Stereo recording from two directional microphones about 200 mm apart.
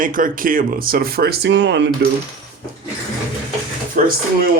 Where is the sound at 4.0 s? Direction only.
40° right (ahead or behind).